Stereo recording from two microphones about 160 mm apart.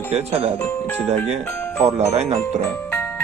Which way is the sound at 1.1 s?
40° right (ahead or behind).